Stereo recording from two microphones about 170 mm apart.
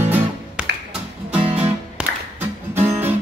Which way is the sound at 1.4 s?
35° right (ahead or behind).